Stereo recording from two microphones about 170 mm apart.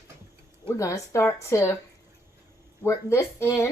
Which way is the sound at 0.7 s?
20° left (ahead or behind).